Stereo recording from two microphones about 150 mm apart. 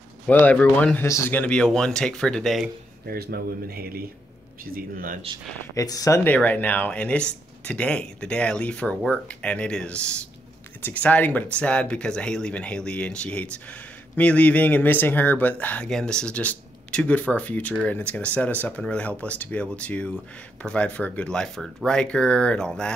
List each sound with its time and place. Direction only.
0.3 s speech: 10° left (ahead or behind)
3.1 s speech: 90° right
4.7 s speech: 65° right (ahead or behind)
5.8 s speech: 25° left (ahead or behind); by 22.9 s 5° left (ahead or behind)